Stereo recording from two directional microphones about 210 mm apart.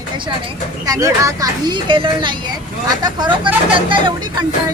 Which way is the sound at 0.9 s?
15° right (ahead or behind).